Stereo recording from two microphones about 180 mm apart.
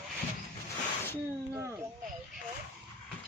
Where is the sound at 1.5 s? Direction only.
15° right (ahead or behind).